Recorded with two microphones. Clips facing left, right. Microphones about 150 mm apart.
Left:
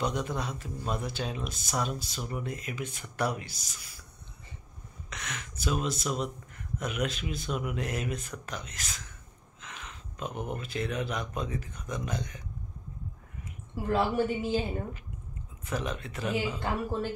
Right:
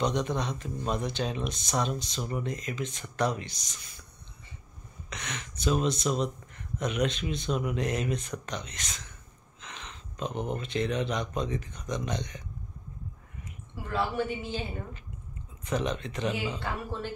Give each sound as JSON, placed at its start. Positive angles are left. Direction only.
{"t": 0.0, "sound": "speech", "side_deg": 5}
{"t": 5.1, "sound": "speech", "side_deg": 0}
{"t": 13.8, "sound": "a woman's voice", "side_deg": 40}
{"t": 15.6, "sound": "speech", "side_deg": 5}